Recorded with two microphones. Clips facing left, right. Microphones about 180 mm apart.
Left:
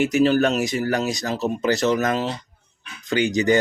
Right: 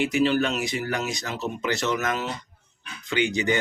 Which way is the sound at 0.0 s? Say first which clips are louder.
Left 4 dB; 45° left (ahead or behind).